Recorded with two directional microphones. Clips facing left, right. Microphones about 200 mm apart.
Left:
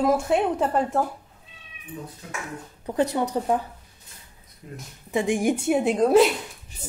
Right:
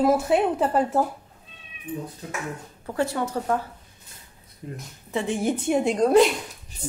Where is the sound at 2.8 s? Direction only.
20° left (ahead or behind).